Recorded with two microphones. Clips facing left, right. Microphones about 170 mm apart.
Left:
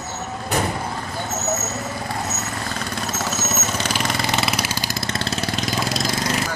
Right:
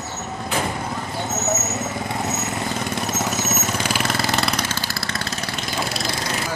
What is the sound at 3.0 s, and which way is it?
Vehicle, 15° right (ahead or behind).